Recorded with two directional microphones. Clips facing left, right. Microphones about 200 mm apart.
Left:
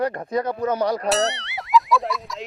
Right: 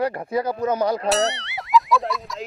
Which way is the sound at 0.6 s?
20° right (ahead or behind).